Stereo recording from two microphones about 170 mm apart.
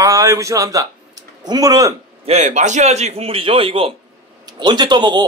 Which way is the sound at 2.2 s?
40° right (ahead or behind).